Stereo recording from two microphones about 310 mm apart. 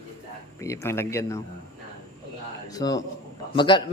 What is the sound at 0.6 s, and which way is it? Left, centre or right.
Speech, centre.